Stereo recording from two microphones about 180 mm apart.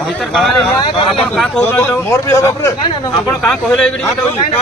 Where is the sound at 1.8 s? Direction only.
15° left (ahead or behind).